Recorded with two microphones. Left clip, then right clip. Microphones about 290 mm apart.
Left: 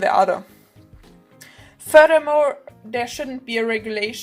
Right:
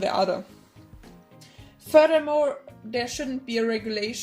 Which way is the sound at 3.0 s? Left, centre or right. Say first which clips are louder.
Left 3 dB; left.